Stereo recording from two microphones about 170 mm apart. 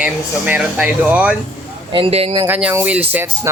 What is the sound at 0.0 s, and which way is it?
Speech, 10° right (ahead or behind).